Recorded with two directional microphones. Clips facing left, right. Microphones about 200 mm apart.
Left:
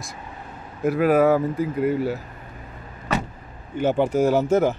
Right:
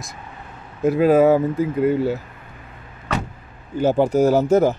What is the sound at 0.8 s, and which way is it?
Speech, 25° right (ahead or behind).